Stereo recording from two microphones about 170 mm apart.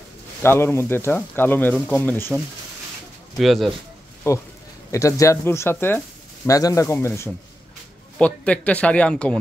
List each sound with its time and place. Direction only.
0.4 s speech: 15° left (ahead or behind)
3.3 s speech: centre (ahead or behind)
4.9 s speech: 20° left (ahead or behind)